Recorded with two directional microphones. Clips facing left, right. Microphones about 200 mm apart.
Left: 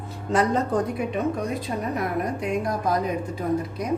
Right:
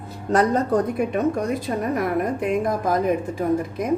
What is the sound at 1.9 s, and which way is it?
A woman's voice, 55° right (ahead or behind).